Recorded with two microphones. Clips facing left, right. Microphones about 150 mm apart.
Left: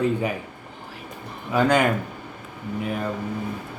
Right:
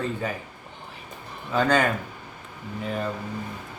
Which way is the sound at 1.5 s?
15° left (ahead or behind).